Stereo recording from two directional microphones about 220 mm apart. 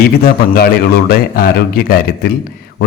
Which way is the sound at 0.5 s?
45° left (ahead or behind).